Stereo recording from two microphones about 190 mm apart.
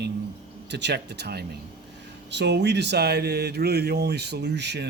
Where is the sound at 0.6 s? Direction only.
65° right (ahead or behind).